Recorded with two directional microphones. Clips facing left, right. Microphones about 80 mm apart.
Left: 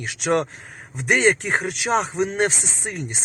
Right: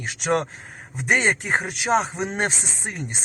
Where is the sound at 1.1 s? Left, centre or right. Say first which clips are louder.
Left 2 dB; centre.